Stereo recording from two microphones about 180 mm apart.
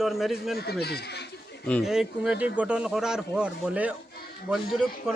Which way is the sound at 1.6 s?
Centre (ahead or behind).